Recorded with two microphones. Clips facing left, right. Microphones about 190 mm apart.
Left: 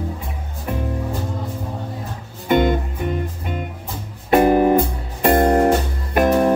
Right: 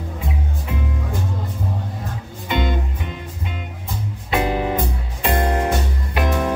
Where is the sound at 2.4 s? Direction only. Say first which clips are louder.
Left 7 dB; 50° left (ahead or behind).